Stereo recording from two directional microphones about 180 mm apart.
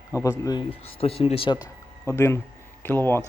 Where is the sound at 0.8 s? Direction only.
30° left (ahead or behind).